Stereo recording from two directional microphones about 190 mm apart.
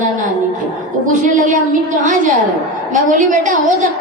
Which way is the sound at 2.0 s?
40° right (ahead or behind).